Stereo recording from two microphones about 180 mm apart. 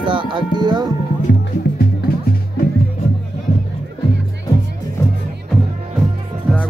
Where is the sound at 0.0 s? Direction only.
30° right (ahead or behind).